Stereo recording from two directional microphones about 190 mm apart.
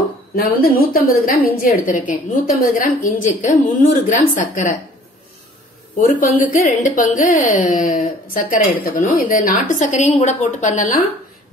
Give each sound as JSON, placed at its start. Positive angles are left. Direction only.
{"t": 0.4, "sound": "a woman's voice", "side_deg": 55}
{"t": 5.9, "sound": "speech", "side_deg": 45}